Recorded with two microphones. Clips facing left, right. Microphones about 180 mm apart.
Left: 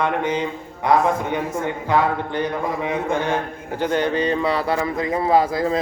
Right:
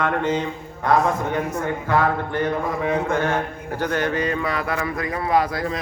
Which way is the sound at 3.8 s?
25° left (ahead or behind).